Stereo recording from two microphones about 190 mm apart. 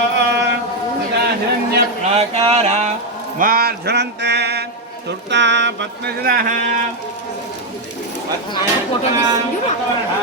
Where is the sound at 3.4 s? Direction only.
50° right (ahead or behind).